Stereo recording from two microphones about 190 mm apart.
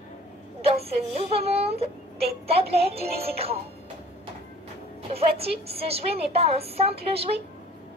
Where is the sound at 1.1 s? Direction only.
30° right (ahead or behind).